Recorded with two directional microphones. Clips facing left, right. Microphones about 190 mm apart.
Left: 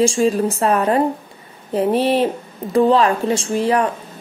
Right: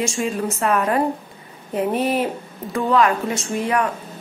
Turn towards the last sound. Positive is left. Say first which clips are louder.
# left 4 dB
turn(degrees=30)  # may be behind; listen again after turning